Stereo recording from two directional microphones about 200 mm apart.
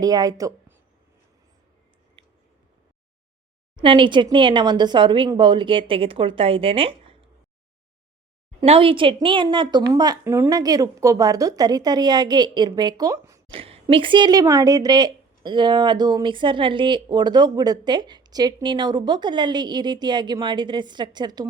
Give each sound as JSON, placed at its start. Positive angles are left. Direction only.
{"t": 0.0, "sound": "a woman's voice", "side_deg": -20}
{"t": 3.8, "sound": "speech", "side_deg": -25}
{"t": 8.6, "sound": "speech", "side_deg": -30}
{"t": 13.5, "sound": "speech", "side_deg": -30}